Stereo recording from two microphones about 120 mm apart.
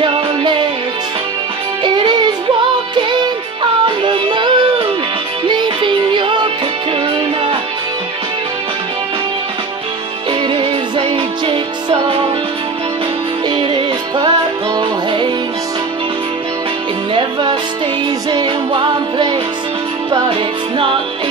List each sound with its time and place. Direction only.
0.0 s music: 40° right (ahead or behind)
1.8 s music: 40° right (ahead or behind)
10.5 s music: 50° right (ahead or behind)
13.5 s music: 40° right (ahead or behind)
17.1 s music: 40° right (ahead or behind)
20.7 s music: 45° right (ahead or behind)